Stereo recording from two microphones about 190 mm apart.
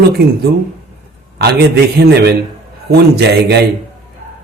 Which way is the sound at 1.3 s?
60° right (ahead or behind).